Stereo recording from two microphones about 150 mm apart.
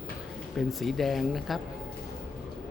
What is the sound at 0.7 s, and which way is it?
Speech, centre (ahead or behind).